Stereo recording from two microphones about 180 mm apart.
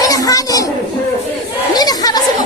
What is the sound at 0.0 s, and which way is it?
Children playing, 20° left (ahead or behind).